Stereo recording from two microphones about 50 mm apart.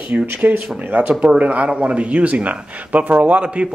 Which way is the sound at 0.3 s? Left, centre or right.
Right.